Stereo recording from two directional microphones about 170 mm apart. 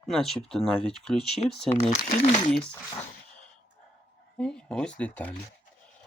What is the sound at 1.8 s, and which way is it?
Speech, 40° left (ahead or behind).